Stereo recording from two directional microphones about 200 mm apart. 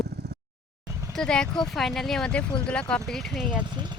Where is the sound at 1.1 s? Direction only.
5° left (ahead or behind).